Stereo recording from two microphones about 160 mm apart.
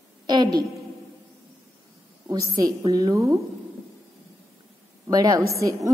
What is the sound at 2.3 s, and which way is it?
A woman's voice, 25° right (ahead or behind).